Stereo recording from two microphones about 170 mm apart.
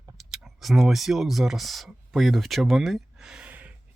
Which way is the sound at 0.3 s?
Centre (ahead or behind).